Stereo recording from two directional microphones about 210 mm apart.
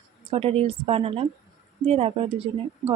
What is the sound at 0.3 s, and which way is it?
A woman's voice, 25° right (ahead or behind).